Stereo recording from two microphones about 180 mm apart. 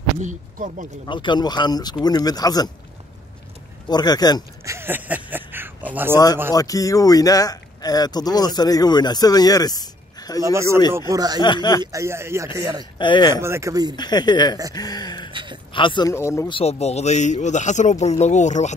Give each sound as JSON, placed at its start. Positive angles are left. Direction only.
{"t": 0.2, "sound": "speech", "side_deg": -45}
{"t": 1.0, "sound": "speech", "side_deg": 25}
{"t": 3.9, "sound": "speech", "side_deg": 20}
{"t": 4.6, "sound": "a sound", "side_deg": -10}
{"t": 6.5, "sound": "speech", "side_deg": 20}
{"t": 10.4, "sound": "speech", "side_deg": -15}
{"t": 11.4, "sound": "speech", "side_deg": 25}
{"t": 11.8, "sound": "speech", "side_deg": -15}
{"t": 13.0, "sound": "speech", "side_deg": 25}
{"t": 13.3, "sound": "speech", "side_deg": -15}
{"t": 13.9, "sound": "speech", "side_deg": 25}
{"t": 16.4, "sound": "speech", "side_deg": 30}